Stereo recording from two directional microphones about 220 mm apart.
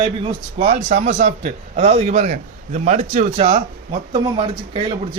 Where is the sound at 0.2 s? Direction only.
25° right (ahead or behind).